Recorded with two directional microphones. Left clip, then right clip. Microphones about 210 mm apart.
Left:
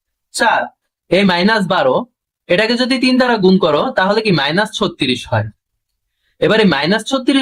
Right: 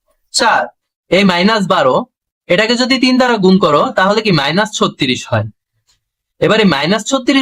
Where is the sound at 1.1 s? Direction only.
10° right (ahead or behind).